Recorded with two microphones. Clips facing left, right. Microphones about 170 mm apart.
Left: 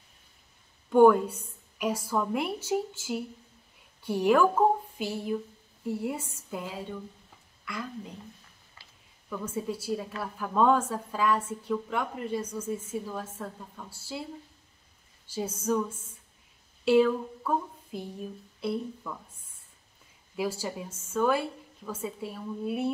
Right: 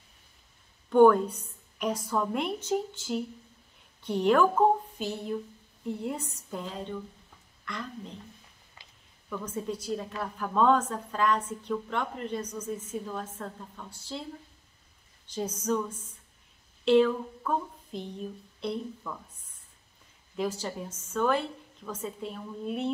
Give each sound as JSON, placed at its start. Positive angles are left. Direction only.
{"t": 0.8, "sound": "a sound", "side_deg": 10}
{"t": 1.8, "sound": "a woman's voice", "side_deg": 10}
{"t": 8.8, "sound": "a sound", "side_deg": -20}
{"t": 9.3, "sound": "a woman's voice", "side_deg": 5}
{"t": 15.2, "sound": "a woman's voice", "side_deg": 5}
{"t": 20.3, "sound": "a woman's voice", "side_deg": 10}